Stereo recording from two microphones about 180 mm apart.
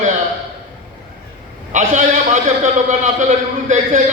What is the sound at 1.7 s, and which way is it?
A man's voice, 45° right (ahead or behind).